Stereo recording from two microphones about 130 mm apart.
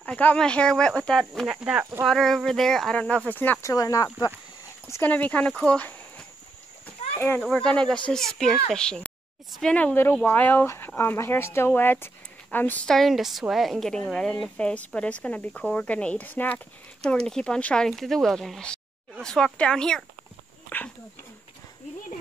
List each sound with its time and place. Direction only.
0.0 s speech: 10° left (ahead or behind)
1.6 s speech: 10° right (ahead or behind)
2.0 s speech: centre (ahead or behind)
3.6 s speech: 25° left (ahead or behind)
4.8 s speech: 15° left (ahead or behind)
17.0 s speech: 5° left (ahead or behind)
20.7 s dog: 15° left (ahead or behind)